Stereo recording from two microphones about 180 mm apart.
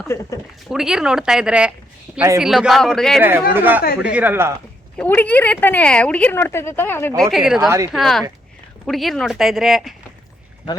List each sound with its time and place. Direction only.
0.1 s speech: 15° left (ahead or behind)
0.7 s speech: 5° right (ahead or behind)
2.1 s speech: 15° right (ahead or behind)
2.4 s speech: centre (ahead or behind)
3.2 s speech: 10° right (ahead or behind)
4.9 s speech: 10° left (ahead or behind)
7.2 s speech: centre (ahead or behind)
7.6 s a woman's voice: 20° right (ahead or behind)
7.9 s speech: centre (ahead or behind)